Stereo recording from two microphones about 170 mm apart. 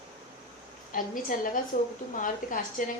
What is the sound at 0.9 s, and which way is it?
A woman's voice, 55° left (ahead or behind).